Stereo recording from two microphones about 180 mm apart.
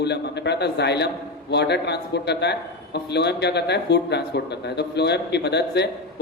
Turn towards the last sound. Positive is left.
turn(degrees=70)  # may be behind; listen again after turning